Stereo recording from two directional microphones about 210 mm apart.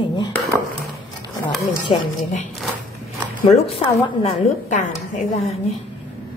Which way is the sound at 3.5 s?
30° left (ahead or behind).